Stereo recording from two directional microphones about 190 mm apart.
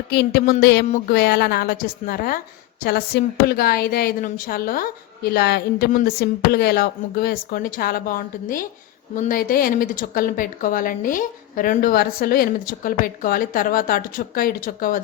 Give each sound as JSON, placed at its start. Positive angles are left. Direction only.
{"t": 0.1, "sound": "a woman's voice", "side_deg": 55}
{"t": 0.9, "sound": "a sound", "side_deg": 40}
{"t": 1.1, "sound": "a woman's voice", "side_deg": 55}